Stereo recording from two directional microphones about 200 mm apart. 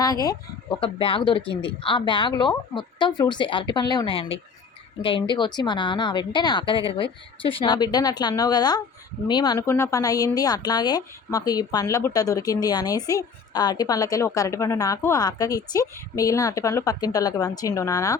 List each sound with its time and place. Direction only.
0.0 s a woman's voice: 20° left (ahead or behind)